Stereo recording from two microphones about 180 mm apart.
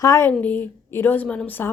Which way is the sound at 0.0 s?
15° left (ahead or behind).